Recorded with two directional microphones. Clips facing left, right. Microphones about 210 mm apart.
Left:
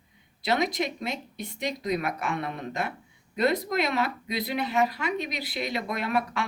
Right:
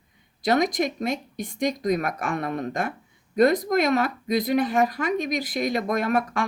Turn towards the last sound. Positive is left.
turn(degrees=-45)  # may be behind; listen again after turning